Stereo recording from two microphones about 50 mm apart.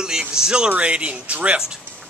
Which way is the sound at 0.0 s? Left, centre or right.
Centre.